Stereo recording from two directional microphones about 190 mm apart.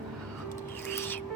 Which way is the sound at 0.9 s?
10° left (ahead or behind).